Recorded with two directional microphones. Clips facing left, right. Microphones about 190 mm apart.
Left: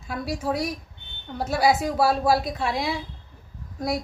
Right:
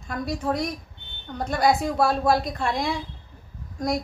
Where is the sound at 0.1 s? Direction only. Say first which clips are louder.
Right 1 dB; 5° left (ahead or behind).